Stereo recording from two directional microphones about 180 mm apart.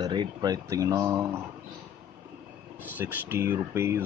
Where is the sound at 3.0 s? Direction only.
10° right (ahead or behind).